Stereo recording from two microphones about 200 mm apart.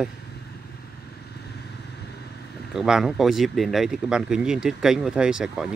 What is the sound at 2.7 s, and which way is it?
Speech, 5° right (ahead or behind).